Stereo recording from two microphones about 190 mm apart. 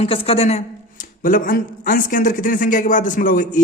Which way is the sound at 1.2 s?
45° left (ahead or behind).